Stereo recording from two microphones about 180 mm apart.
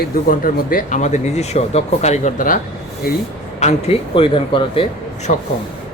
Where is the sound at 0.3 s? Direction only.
50° left (ahead or behind).